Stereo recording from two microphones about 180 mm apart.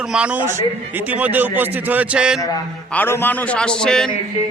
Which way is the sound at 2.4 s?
20° left (ahead or behind).